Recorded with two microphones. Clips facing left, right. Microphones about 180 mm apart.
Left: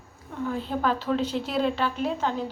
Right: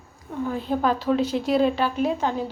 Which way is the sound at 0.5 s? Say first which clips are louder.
Right 3 dB; 15° right (ahead or behind).